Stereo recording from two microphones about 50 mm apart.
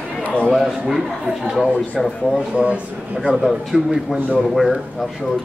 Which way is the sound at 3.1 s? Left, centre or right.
Centre.